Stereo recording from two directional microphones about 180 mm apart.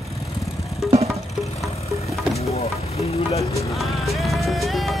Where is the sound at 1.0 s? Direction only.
Centre (ahead or behind).